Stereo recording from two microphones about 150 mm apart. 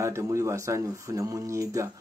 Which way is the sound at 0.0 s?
20° right (ahead or behind).